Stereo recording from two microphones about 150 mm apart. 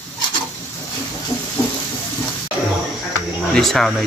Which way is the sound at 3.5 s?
Centre (ahead or behind).